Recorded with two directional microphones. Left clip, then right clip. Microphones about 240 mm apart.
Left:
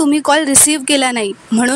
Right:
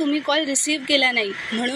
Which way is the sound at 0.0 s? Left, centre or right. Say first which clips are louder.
Left 8 dB; left.